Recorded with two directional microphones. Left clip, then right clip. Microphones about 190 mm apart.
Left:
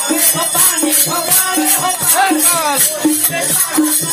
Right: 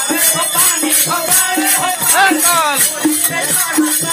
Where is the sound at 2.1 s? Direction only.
10° right (ahead or behind).